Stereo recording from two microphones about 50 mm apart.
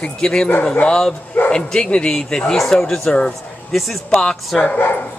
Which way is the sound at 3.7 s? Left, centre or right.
Centre.